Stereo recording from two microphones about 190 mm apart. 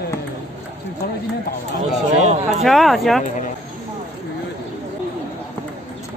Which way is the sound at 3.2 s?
40° left (ahead or behind).